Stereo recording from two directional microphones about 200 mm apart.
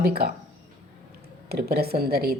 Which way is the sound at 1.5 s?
50° right (ahead or behind).